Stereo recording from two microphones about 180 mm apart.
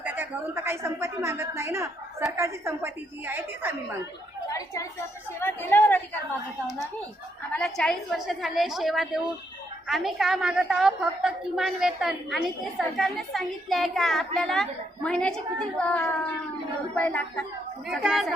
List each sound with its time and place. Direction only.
0.0 s a woman's voice: 10° right (ahead or behind)
4.4 s a sound: 20° left (ahead or behind)
5.4 s a woman's voice: 10° left (ahead or behind)
7.5 s a woman's voice: 5° left (ahead or behind)